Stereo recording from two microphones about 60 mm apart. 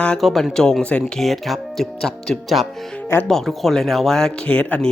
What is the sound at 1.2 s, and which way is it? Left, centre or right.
Speech, centre.